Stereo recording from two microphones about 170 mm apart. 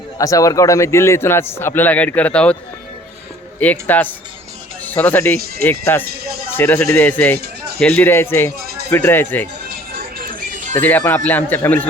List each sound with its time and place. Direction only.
0.2 s a man's voice: 20° left (ahead or behind)
3.6 s a man's voice: 10° left (ahead or behind)
10.0 s music: 55° right (ahead or behind)
10.8 s a man's voice: 10° left (ahead or behind)